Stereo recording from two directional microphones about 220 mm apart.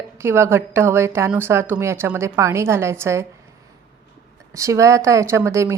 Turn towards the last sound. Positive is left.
turn(degrees=-10)  # may be behind; listen again after turning